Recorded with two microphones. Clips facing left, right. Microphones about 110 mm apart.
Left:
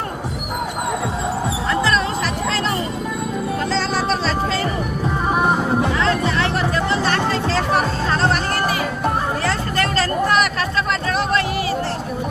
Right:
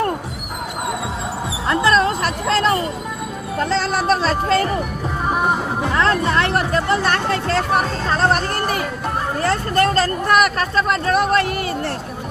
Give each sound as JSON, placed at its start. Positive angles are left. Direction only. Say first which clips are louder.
{"t": 1.9, "sound": "music", "louder": "right 3 dB", "side_deg": -45}
{"t": 3.8, "sound": "music", "louder": "right 4 dB", "side_deg": -50}
{"t": 5.9, "sound": "music", "louder": "right 2 dB", "side_deg": -50}
{"t": 9.5, "sound": "a sound", "louder": "right 4 dB", "side_deg": -45}